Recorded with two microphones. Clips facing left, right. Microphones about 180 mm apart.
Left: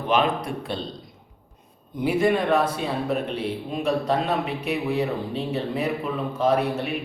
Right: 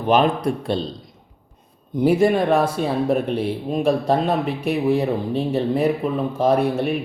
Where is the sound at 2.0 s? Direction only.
45° right (ahead or behind).